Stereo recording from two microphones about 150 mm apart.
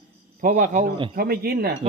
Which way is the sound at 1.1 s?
90° right.